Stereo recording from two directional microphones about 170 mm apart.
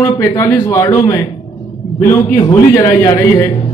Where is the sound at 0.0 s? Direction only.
20° left (ahead or behind).